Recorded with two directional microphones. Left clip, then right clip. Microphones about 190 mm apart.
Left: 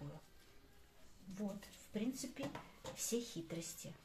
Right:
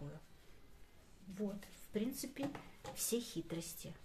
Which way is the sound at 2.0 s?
40° right (ahead or behind).